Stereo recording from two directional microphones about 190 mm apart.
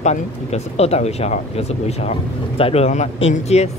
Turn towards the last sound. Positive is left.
turn(degrees=35)  # may be behind; listen again after turning